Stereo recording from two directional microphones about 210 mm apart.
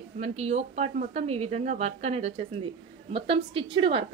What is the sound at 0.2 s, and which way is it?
A woman's voice, 30° right (ahead or behind).